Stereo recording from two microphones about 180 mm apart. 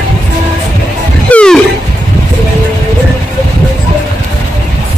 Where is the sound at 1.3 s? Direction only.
5° left (ahead or behind).